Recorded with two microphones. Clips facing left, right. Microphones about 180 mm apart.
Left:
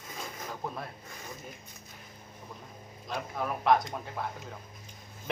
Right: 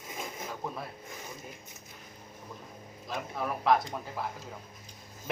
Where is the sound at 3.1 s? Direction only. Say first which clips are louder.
Even; centre (ahead or behind).